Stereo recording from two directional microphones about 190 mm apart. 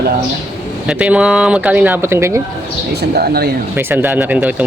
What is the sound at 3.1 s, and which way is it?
Speech, 55° right (ahead or behind).